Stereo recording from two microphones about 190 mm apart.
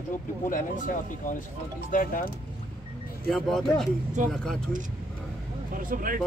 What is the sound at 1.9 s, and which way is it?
Speech, 50° left (ahead or behind).